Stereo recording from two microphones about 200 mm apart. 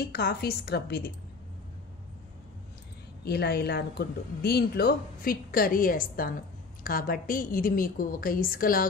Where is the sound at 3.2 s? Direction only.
50° left (ahead or behind).